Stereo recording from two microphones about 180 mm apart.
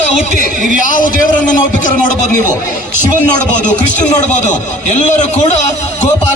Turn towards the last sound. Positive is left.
turn(degrees=40)  # may be behind; listen again after turning